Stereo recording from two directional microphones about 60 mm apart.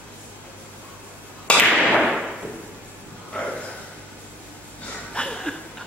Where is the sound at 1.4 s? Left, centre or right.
Centre.